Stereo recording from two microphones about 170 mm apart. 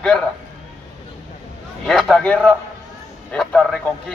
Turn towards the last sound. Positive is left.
turn(degrees=5)  # may be behind; listen again after turning